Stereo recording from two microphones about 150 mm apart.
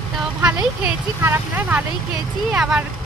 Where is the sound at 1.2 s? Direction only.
15° right (ahead or behind).